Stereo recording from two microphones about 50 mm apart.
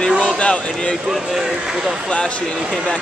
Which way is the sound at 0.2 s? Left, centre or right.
Left.